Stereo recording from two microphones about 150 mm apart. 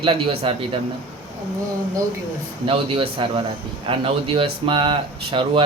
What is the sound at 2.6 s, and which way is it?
Speech, 35° right (ahead or behind).